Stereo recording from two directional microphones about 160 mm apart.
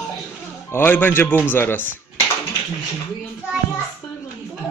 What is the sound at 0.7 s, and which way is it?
Speech, 15° left (ahead or behind).